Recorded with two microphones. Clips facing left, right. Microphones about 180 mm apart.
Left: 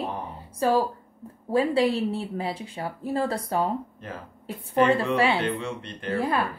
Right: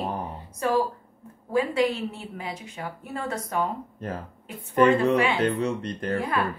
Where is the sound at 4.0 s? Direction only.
40° right (ahead or behind).